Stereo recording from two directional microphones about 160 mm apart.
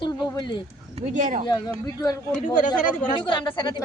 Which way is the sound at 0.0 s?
25° left (ahead or behind).